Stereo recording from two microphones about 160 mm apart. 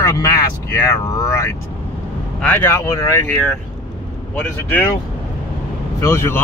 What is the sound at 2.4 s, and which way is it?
Speech, 10° left (ahead or behind).